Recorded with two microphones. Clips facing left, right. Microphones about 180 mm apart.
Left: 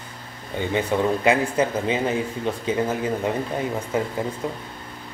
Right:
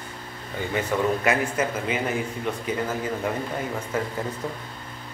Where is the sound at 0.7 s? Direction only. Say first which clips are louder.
Left 2 dB; 25° left (ahead or behind).